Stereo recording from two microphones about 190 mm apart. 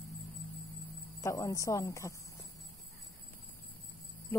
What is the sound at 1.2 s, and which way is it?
Speech, 15° left (ahead or behind).